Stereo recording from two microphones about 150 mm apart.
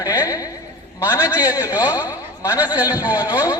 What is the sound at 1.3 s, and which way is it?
Speech, 20° left (ahead or behind).